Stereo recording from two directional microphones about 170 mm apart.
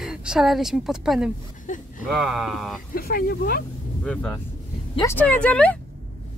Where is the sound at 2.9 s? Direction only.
60° left (ahead or behind).